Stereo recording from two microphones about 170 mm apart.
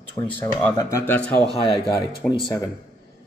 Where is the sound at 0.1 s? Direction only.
15° left (ahead or behind).